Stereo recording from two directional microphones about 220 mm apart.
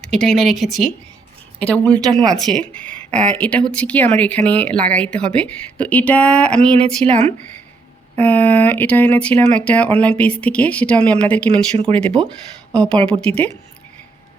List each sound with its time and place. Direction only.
0.0 s a woman's voice: 5° left (ahead or behind)
7.0 s a woman's voice: 30° right (ahead or behind)
8.2 s a woman's voice: 5° left (ahead or behind)
11.9 s speech: 25° right (ahead or behind)
12.7 s speech: 5° left (ahead or behind)